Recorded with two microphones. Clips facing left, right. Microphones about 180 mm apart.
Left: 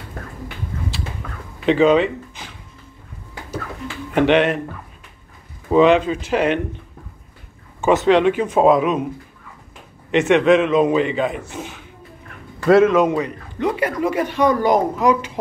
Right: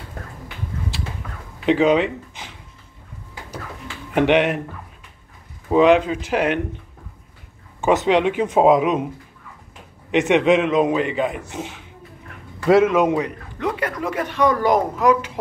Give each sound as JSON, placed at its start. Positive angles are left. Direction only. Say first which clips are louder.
{"t": 1.7, "sound": "speech", "louder": "left 2 dB", "side_deg": -10}
{"t": 4.1, "sound": "a man's voice", "louder": "left 1 dB", "side_deg": -15}
{"t": 5.7, "sound": "a man's voice", "louder": "left 1 dB", "side_deg": -10}
{"t": 7.9, "sound": "a man's voice", "louder": "left 3 dB", "side_deg": -15}
{"t": 10.1, "sound": "a man's voice", "louder": "left 2 dB", "side_deg": -15}
{"t": 12.6, "sound": "a man's voice", "louder": "left 2 dB", "side_deg": -10}
{"t": 13.6, "sound": "a woman's voice", "louder": "left 4 dB", "side_deg": 5}